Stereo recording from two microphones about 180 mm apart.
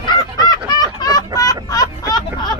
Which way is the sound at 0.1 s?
25° left (ahead or behind).